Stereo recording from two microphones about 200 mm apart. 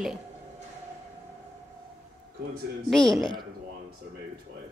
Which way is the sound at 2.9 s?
Centre (ahead or behind).